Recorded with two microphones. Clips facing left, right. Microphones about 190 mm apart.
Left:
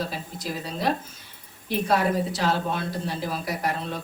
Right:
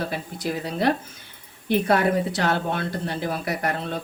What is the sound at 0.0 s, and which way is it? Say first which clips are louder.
A woman's voice: right 3 dB; 60° right (ahead or behind).